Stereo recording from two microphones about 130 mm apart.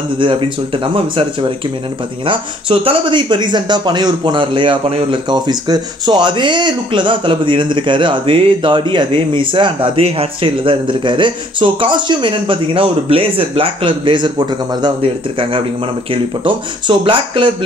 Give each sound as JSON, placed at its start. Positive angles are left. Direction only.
{"t": 2.2, "sound": "speech", "side_deg": -45}